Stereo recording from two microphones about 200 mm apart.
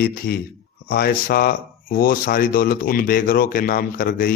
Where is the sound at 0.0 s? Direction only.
50° left (ahead or behind).